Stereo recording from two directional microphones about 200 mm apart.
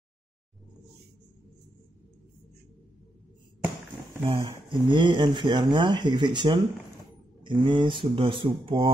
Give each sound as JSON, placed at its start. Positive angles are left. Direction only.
{"t": 4.4, "sound": "speech", "side_deg": -25}